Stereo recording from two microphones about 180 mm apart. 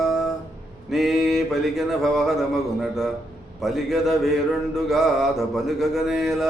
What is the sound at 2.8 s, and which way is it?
Mantra, centre (ahead or behind).